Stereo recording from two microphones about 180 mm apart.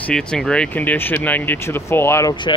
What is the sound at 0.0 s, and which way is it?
Speech, 5° left (ahead or behind).